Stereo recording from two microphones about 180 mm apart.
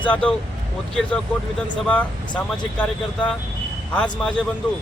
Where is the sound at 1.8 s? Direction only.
5° left (ahead or behind).